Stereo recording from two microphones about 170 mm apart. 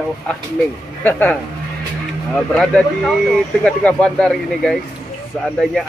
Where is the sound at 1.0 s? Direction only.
10° left (ahead or behind).